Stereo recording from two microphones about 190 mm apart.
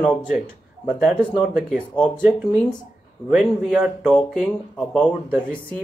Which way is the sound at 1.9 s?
25° left (ahead or behind).